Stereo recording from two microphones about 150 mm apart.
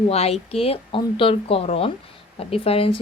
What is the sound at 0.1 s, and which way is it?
Speech, 45° left (ahead or behind).